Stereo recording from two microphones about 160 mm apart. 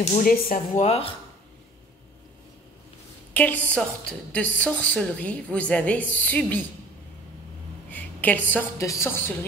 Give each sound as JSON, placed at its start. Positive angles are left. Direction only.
{"t": 0.2, "sound": "speech", "side_deg": 60}
{"t": 0.8, "sound": "speech", "side_deg": 40}
{"t": 3.6, "sound": "a woman's voice", "side_deg": 10}
{"t": 7.9, "sound": "a woman's voice", "side_deg": 10}